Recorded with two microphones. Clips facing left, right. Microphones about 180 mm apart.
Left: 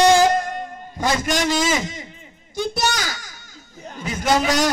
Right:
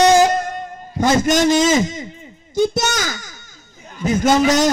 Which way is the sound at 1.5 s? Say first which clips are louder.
Right 5 dB; 20° right (ahead or behind).